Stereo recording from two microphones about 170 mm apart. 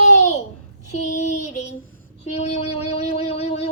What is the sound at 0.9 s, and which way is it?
Child singing, 45° left (ahead or behind).